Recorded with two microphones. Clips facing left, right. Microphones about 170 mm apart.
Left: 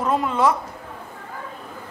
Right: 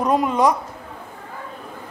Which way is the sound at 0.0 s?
15° right (ahead or behind).